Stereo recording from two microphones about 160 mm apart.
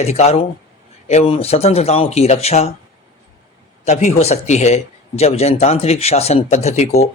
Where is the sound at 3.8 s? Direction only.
45° left (ahead or behind).